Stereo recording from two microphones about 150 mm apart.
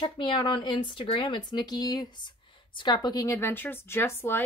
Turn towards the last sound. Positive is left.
turn(degrees=15)  # may be behind; listen again after turning